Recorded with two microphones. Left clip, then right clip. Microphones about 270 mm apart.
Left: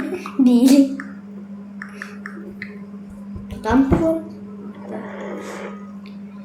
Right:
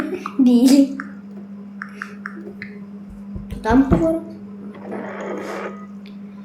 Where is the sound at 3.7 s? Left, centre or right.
Centre.